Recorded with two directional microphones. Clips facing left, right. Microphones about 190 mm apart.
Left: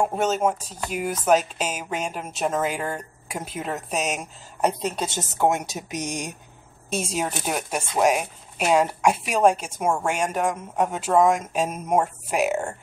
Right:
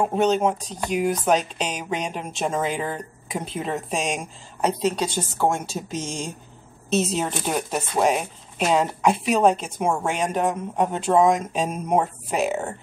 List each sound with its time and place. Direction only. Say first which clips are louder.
0.0 s speech: right 2 dB; 5° left (ahead or behind)
5.1 s speech: left 1 dB; 20° left (ahead or behind)